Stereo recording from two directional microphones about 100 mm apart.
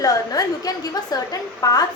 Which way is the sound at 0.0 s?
35° left (ahead or behind).